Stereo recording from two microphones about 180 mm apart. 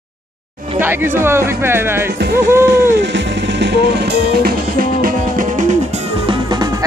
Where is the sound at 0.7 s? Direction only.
10° right (ahead or behind).